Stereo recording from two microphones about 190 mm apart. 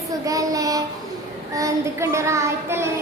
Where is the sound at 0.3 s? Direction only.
20° right (ahead or behind).